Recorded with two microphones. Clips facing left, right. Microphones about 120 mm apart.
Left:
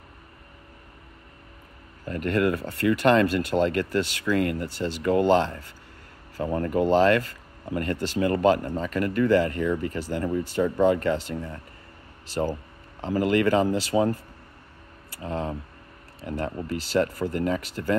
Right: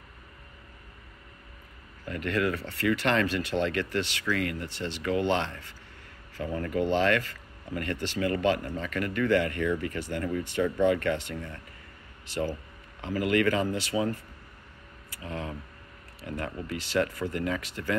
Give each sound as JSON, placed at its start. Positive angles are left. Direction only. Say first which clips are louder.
{"t": 2.0, "sound": "speech", "louder": "left 5 dB", "side_deg": 45}